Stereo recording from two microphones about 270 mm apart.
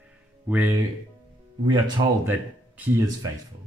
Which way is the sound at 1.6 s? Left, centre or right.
Centre.